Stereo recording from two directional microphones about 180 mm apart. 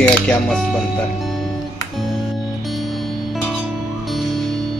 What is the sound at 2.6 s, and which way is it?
Music, centre (ahead or behind).